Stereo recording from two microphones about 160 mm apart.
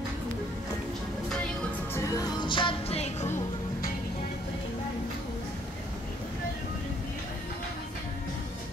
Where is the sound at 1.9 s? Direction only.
20° left (ahead or behind).